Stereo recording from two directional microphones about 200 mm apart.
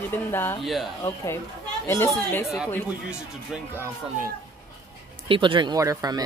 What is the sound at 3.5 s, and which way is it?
Speech, 5° right (ahead or behind).